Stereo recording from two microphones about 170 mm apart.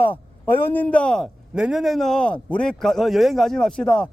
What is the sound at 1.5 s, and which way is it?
A man's voice, 5° right (ahead or behind).